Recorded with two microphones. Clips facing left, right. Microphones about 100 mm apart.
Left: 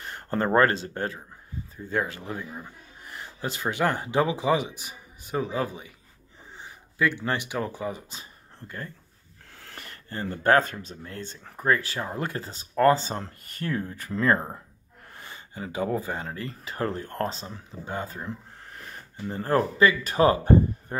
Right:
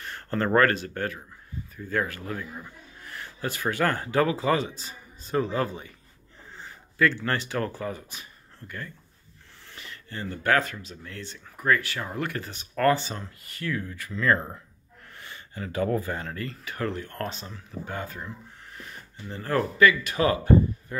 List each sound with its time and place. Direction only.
0.0 s a man's voice: 25° left (ahead or behind)
9.8 s speech: 45° left (ahead or behind); by 13.0 s 25° left (ahead or behind)
13.5 s speech: 35° left (ahead or behind)
14.2 s speech: 25° left (ahead or behind)
15.1 s gasp: 30° left (ahead or behind)
15.5 s speech: 20° left (ahead or behind)
18.8 s speech: 35° left (ahead or behind)